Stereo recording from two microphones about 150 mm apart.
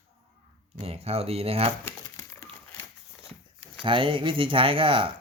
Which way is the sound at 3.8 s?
35° right (ahead or behind).